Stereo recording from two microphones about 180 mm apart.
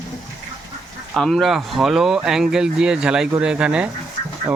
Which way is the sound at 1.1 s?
Centre (ahead or behind).